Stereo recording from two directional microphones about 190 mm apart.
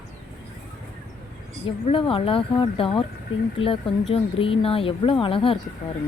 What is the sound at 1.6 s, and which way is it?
Speech, 30° left (ahead or behind).